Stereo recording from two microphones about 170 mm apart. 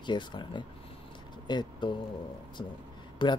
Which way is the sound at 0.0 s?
25° left (ahead or behind).